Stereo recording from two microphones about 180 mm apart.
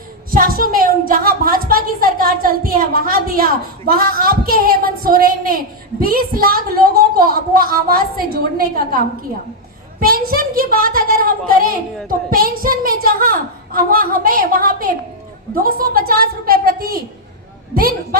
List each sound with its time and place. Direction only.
0.3 s a woman's voice: 55° right (ahead or behind)